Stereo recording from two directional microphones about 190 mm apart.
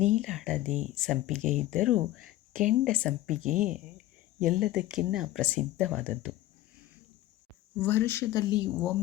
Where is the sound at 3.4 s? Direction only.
45° right (ahead or behind).